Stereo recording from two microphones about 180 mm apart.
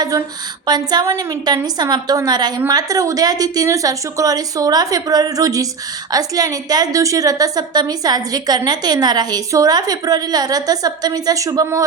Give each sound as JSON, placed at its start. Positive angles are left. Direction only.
{"t": 0.7, "sound": "a woman's voice", "side_deg": -25}